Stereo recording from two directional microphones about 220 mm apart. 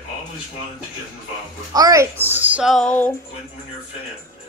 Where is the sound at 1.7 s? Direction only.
15° right (ahead or behind).